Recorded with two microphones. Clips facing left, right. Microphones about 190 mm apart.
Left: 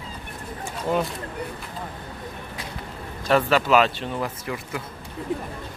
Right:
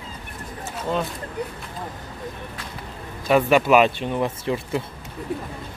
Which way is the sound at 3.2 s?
15° right (ahead or behind).